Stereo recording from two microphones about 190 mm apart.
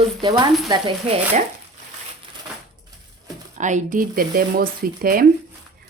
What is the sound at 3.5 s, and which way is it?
Speech, 40° right (ahead or behind).